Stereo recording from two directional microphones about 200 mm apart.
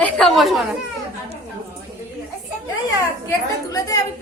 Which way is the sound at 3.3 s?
15° left (ahead or behind).